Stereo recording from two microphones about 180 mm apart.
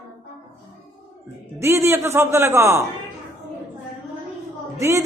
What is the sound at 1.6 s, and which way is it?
A man's voice, 15° right (ahead or behind).